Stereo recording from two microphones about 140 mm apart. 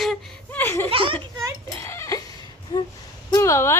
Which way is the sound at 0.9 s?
40° right (ahead or behind).